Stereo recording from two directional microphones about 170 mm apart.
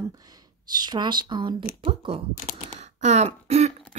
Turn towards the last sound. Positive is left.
turn(degrees=-40)  # may be behind; listen again after turning